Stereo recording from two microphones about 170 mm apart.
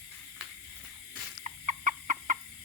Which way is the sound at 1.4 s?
45° right (ahead or behind).